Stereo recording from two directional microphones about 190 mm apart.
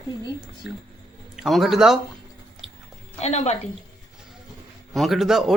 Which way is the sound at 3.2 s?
35° left (ahead or behind).